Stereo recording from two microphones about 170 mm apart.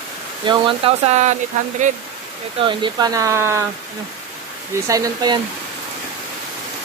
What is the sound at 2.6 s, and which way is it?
Speech, 30° right (ahead or behind).